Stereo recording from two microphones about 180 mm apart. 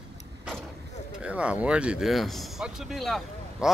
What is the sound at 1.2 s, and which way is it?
A man's voice, 5° right (ahead or behind).